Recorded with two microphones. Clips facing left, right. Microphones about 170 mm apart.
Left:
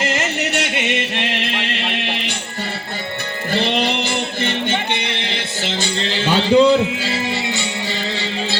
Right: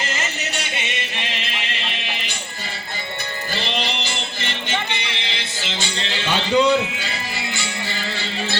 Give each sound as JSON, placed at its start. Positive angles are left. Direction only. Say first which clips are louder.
{"t": 0.0, "sound": "music", "louder": "left 7 dB", "side_deg": 65}
{"t": 3.5, "sound": "music", "louder": "left 8 dB", "side_deg": 55}
{"t": 6.1, "sound": "music", "louder": "left 6 dB", "side_deg": 35}